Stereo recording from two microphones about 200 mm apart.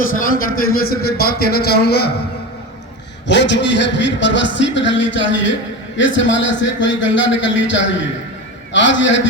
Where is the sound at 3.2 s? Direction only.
60° left (ahead or behind).